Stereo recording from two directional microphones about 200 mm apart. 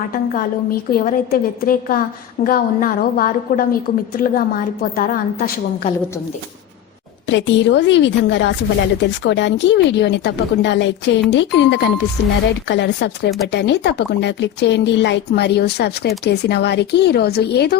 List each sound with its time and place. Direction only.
0.9 s a woman's voice: 45° left (ahead or behind)
7.3 s speech: 65° left (ahead or behind)